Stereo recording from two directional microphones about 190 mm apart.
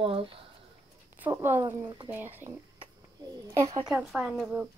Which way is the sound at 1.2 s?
10° right (ahead or behind).